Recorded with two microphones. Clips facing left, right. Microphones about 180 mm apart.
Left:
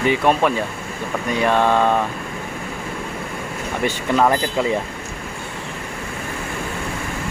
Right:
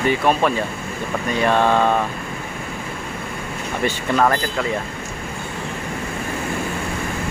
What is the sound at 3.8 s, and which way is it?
Speech, 15° left (ahead or behind).